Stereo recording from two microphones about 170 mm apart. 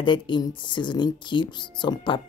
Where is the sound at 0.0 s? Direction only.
30° left (ahead or behind).